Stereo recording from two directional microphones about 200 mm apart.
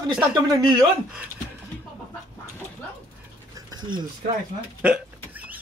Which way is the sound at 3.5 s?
20° right (ahead or behind).